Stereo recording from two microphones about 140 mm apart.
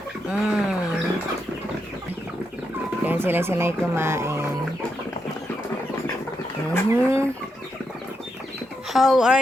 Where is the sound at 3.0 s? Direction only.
15° right (ahead or behind).